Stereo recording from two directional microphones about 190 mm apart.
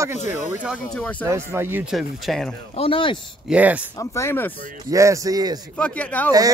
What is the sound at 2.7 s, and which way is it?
Speech, 30° left (ahead or behind).